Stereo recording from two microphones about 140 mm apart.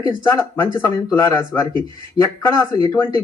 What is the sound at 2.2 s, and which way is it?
Speech, 5° right (ahead or behind).